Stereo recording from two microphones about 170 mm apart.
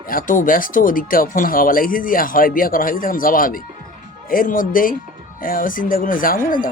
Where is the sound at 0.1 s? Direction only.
55° left (ahead or behind).